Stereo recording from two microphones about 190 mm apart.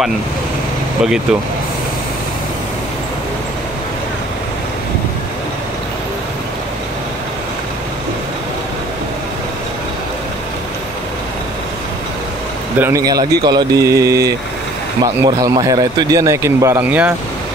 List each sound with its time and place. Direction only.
12.7 s a man's voice: 15° right (ahead or behind)
15.2 s a man's voice: 20° right (ahead or behind)